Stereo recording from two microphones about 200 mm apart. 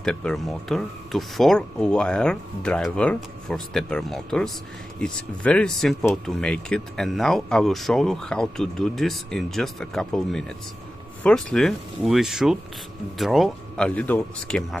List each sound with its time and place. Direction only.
0.0 s speech: 5° left (ahead or behind)